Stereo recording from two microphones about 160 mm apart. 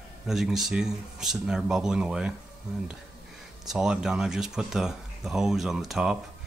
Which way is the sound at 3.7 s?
5° right (ahead or behind).